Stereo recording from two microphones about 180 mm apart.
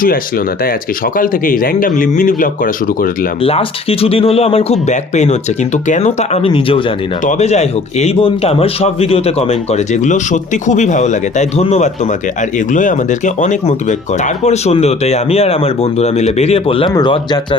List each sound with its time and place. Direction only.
0.0 s speech: 55° left (ahead or behind)
3.4 s a man's voice: 30° left (ahead or behind)